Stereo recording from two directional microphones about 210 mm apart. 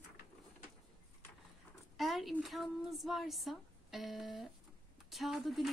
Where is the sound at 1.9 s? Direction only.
Centre (ahead or behind).